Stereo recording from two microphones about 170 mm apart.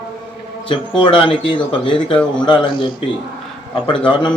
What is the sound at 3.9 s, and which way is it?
Speech, 30° left (ahead or behind).